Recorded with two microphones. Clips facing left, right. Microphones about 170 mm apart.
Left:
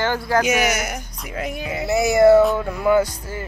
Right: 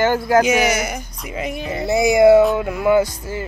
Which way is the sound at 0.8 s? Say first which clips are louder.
Right 3 dB; centre (ahead or behind).